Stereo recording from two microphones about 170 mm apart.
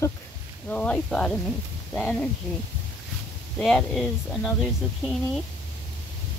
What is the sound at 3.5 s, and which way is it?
Speech, centre (ahead or behind).